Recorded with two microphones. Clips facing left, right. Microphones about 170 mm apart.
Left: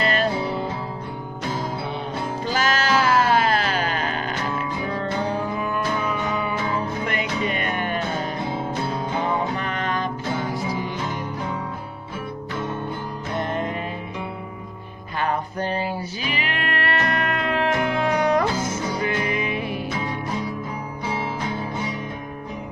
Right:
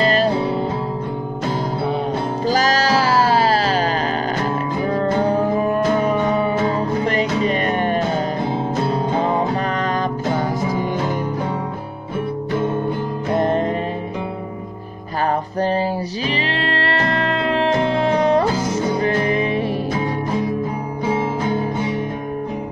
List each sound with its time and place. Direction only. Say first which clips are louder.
0.0 s music: right 5 dB; 35° right (ahead or behind)
2.4 s music: right 5 dB; 35° right (ahead or behind)
13.3 s music: right 8 dB; 35° right (ahead or behind)
15.6 s music: right 9 dB; 35° right (ahead or behind)
21.1 s music: right 7 dB; 40° right (ahead or behind)